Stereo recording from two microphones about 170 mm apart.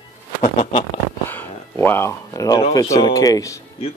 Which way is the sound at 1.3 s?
10° left (ahead or behind).